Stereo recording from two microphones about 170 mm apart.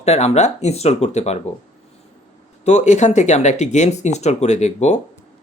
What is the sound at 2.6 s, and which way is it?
Speech, 45° left (ahead or behind).